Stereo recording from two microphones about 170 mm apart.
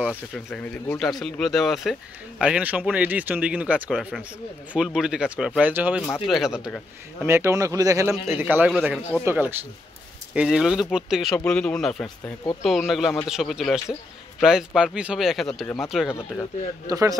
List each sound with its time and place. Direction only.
0.5 s speech: 5° left (ahead or behind)
7.2 s speech: 15° right (ahead or behind)
16.8 s a man's voice: 20° right (ahead or behind)